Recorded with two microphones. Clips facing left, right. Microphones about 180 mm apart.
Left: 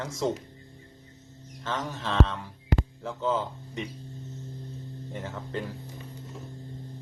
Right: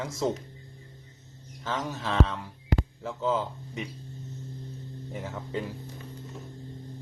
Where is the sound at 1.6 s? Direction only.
5° right (ahead or behind).